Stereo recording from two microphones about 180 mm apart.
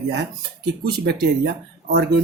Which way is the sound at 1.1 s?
65° right (ahead or behind).